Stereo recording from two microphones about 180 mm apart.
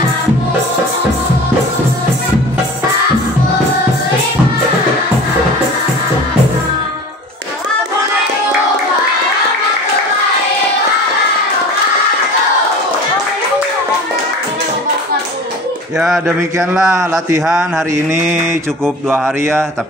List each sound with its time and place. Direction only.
16.5 s speech: 15° right (ahead or behind)
19.0 s speech: 10° right (ahead or behind)